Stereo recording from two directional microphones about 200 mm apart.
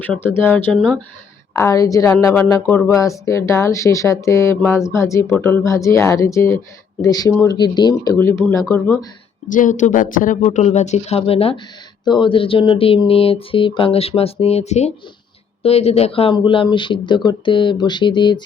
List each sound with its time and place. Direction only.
0.0 s a woman's voice: 10° left (ahead or behind)
1.5 s a woman's voice: 15° left (ahead or behind)
9.5 s speech: 40° left (ahead or behind)
12.0 s a sound: 25° left (ahead or behind)